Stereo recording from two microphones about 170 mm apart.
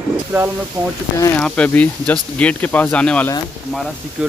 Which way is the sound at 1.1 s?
20° left (ahead or behind).